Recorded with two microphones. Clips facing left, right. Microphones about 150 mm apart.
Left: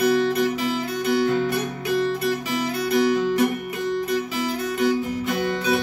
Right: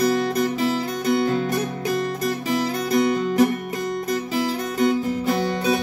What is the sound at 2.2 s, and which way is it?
Guitar, 40° right (ahead or behind).